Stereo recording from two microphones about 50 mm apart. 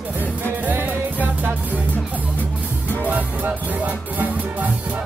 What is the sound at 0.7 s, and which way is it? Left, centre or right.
Music, right.